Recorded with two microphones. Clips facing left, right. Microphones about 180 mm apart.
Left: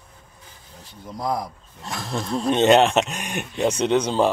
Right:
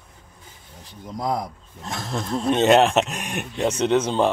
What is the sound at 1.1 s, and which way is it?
Speech, 20° right (ahead or behind).